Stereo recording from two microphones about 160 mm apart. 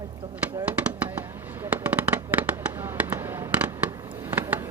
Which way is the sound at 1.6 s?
10° right (ahead or behind).